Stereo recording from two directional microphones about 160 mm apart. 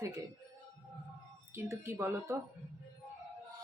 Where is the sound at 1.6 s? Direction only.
15° right (ahead or behind).